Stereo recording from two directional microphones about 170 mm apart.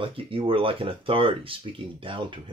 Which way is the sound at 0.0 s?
30° right (ahead or behind).